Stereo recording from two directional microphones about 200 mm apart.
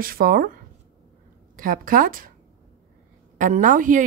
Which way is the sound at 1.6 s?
45° right (ahead or behind).